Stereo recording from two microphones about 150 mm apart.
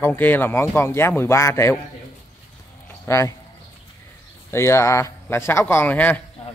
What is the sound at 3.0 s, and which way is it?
Speech, 20° left (ahead or behind).